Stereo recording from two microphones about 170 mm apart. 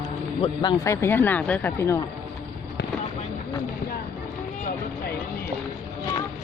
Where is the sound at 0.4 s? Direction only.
25° left (ahead or behind).